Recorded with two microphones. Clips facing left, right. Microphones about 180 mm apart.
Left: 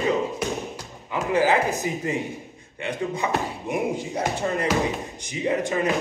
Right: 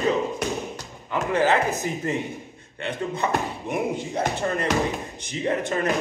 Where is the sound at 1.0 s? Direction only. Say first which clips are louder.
Even; 10° left (ahead or behind).